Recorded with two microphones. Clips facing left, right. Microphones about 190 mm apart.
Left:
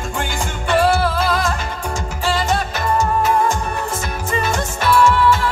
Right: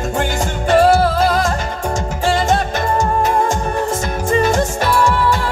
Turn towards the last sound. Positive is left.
turn(degrees=-40)  # may be behind; listen again after turning